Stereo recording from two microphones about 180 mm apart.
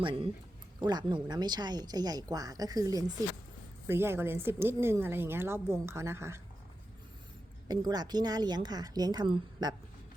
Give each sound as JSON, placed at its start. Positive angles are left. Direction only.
{"t": 0.0, "sound": "a woman's voice", "side_deg": -30}
{"t": 7.7, "sound": "speech", "side_deg": -20}